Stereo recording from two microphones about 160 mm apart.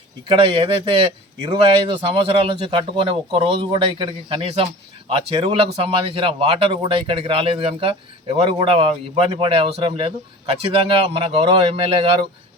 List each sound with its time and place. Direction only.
0.3 s speech: 35° right (ahead or behind)